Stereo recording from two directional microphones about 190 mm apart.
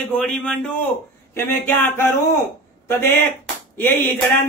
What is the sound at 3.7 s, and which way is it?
Speech, 10° left (ahead or behind).